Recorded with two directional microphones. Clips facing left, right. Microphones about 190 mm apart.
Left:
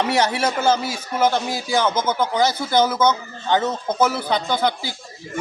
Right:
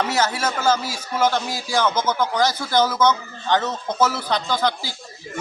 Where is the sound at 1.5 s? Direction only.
20° left (ahead or behind).